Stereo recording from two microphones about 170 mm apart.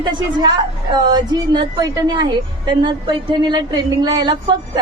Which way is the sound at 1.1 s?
25° right (ahead or behind).